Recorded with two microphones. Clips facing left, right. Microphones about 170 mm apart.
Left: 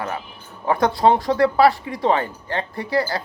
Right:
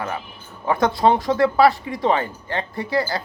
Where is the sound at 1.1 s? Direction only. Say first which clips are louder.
Left 1 dB; 20° right (ahead or behind).